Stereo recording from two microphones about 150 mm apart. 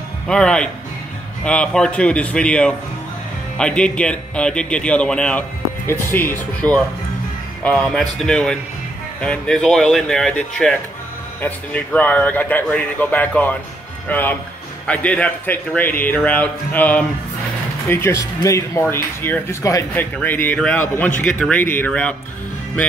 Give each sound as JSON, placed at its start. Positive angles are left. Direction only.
{"t": 0.3, "sound": "speech", "side_deg": 5}